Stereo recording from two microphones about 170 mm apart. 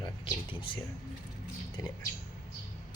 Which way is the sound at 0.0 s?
30° left (ahead or behind).